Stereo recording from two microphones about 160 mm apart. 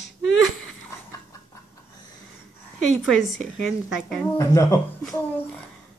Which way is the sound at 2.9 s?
Centre (ahead or behind).